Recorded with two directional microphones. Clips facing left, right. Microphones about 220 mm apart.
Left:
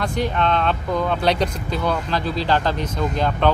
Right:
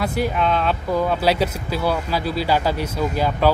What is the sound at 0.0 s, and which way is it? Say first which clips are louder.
Speech: right 1 dB; 5° right (ahead or behind).